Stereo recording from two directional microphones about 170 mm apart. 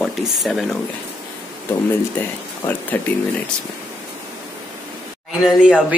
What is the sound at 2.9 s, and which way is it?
Speech, 10° left (ahead or behind).